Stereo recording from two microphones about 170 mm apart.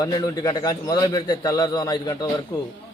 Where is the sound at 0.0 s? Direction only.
20° left (ahead or behind).